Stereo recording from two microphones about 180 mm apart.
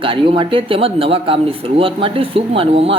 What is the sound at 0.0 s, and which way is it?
A woman's voice, 30° right (ahead or behind).